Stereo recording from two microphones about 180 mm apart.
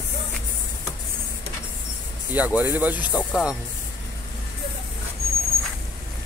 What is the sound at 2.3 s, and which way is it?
Speech, 10° right (ahead or behind).